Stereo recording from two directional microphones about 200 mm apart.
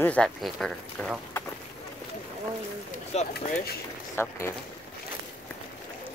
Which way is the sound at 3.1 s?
35° left (ahead or behind).